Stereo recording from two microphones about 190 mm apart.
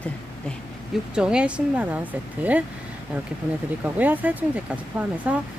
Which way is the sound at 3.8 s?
10° right (ahead or behind).